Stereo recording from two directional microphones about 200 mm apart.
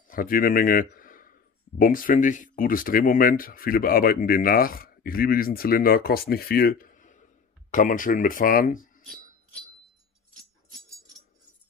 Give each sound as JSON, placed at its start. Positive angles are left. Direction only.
{"t": 0.1, "sound": "a man's voice", "side_deg": 45}